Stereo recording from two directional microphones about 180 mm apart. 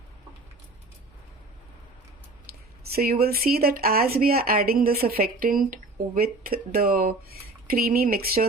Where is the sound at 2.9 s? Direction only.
55° right (ahead or behind).